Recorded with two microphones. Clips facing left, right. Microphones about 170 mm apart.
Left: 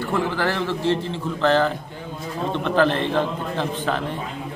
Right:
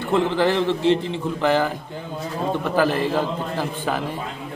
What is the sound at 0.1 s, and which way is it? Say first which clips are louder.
A man's voice: right 5 dB; 20° right (ahead or behind).